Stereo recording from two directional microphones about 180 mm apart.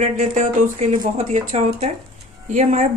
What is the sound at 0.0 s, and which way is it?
Speech, 40° right (ahead or behind).